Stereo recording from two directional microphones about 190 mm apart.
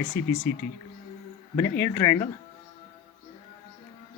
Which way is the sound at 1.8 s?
15° left (ahead or behind).